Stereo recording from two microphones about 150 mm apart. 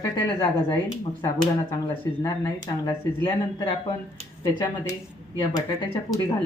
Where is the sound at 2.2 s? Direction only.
25° left (ahead or behind).